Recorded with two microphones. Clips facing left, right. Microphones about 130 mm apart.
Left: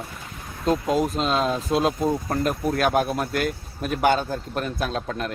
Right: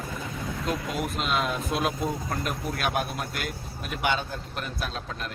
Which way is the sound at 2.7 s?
45° left (ahead or behind).